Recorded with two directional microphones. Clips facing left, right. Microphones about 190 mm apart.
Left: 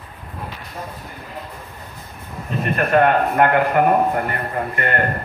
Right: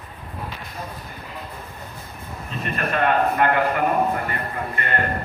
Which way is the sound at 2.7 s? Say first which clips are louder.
Left 5 dB; 50° left (ahead or behind).